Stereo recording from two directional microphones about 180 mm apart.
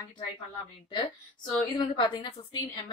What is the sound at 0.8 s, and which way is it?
A woman's voice, 25° left (ahead or behind).